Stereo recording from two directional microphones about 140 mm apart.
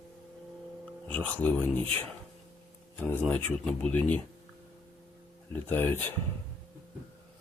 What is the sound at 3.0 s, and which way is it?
Speech, 10° left (ahead or behind).